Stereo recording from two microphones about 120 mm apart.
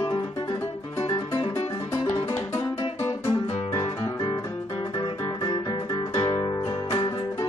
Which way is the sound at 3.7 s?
30° left (ahead or behind).